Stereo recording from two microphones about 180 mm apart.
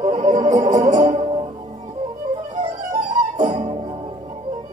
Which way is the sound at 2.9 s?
40° right (ahead or behind).